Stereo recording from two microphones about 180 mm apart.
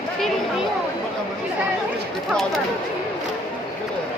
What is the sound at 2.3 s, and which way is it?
Speech, centre (ahead or behind).